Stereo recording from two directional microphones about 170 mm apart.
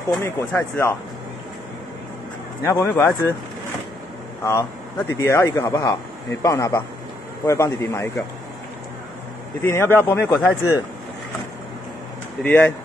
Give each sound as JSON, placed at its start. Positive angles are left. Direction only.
{"t": 0.2, "sound": "speech", "side_deg": 10}
{"t": 2.6, "sound": "speech", "side_deg": 15}
{"t": 4.5, "sound": "a man's voice", "side_deg": 15}
{"t": 9.6, "sound": "speech", "side_deg": 15}
{"t": 12.4, "sound": "speech", "side_deg": 10}